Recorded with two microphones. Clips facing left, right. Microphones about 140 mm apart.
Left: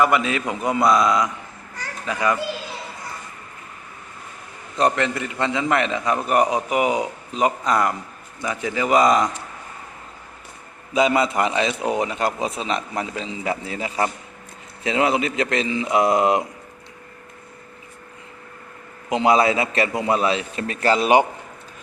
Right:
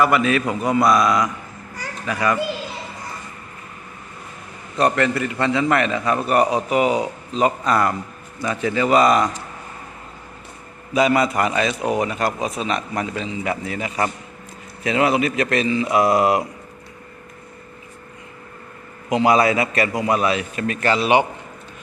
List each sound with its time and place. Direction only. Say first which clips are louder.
0.0 s a man's voice: right 2 dB; 20° left (ahead or behind)
4.8 s a man's voice: right 2 dB; 20° left (ahead or behind)
10.9 s a man's voice: right 1 dB; 20° left (ahead or behind)
19.1 s a man's voice: right 1 dB; 25° left (ahead or behind); by 21.2 s 45° left (ahead or behind)